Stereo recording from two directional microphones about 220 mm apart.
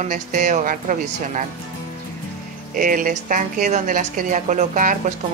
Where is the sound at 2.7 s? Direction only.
40° right (ahead or behind).